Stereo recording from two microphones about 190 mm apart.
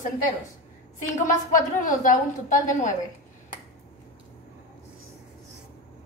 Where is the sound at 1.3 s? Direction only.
45° left (ahead or behind).